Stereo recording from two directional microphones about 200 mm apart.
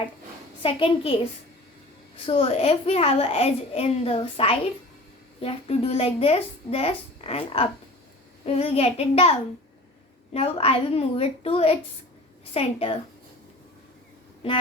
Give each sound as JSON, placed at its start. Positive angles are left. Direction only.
{"t": 0.6, "sound": "a child's voice", "side_deg": 25}
{"t": 10.3, "sound": "a child's voice", "side_deg": 30}